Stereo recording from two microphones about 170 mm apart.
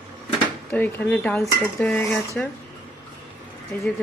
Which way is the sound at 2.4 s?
5° left (ahead or behind).